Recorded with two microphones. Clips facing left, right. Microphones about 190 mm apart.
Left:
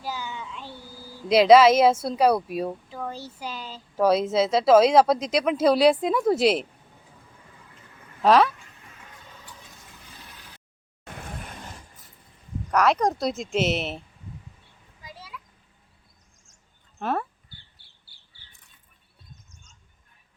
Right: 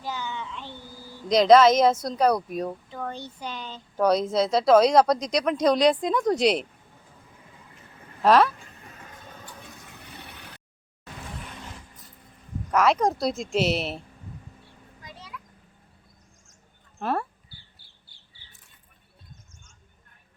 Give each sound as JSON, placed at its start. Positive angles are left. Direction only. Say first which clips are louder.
{"t": 0.0, "sound": "speech", "louder": "right 1 dB", "side_deg": 10}
{"t": 8.2, "sound": "speech", "louder": "even", "side_deg": 0}
{"t": 9.9, "sound": "a sound", "louder": "right 4 dB", "side_deg": -65}
{"t": 11.0, "sound": "vehicle", "louder": "left 1 dB", "side_deg": 55}
{"t": 12.7, "sound": "speech", "louder": "even", "side_deg": 0}
{"t": 15.0, "sound": "a sound", "louder": "left 1 dB", "side_deg": 5}
{"t": 17.0, "sound": "speech", "louder": "even", "side_deg": 0}